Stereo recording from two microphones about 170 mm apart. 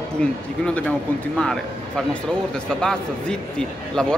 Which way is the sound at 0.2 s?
5° left (ahead or behind).